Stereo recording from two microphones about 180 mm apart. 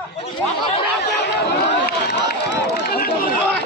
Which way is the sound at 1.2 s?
70° left (ahead or behind).